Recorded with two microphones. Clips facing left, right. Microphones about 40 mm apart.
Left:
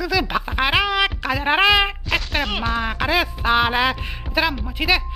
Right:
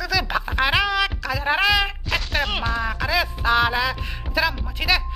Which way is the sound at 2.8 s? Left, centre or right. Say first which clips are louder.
Left 3 dB; left.